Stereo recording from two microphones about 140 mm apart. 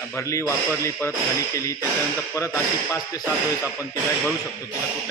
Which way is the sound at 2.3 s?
20° left (ahead or behind).